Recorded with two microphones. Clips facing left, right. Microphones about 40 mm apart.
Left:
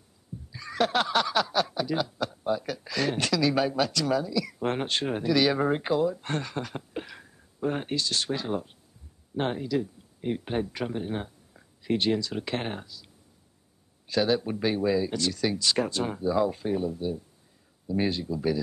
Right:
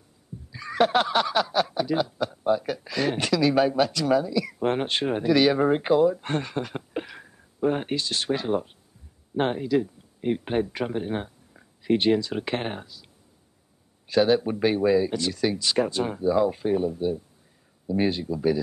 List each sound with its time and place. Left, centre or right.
0.5 s speech: centre